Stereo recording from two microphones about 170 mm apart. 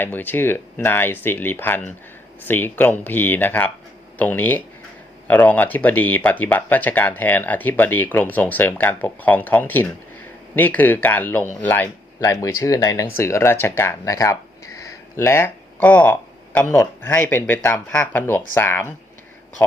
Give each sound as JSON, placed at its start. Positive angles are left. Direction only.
{"t": 0.0, "sound": "speech", "side_deg": 10}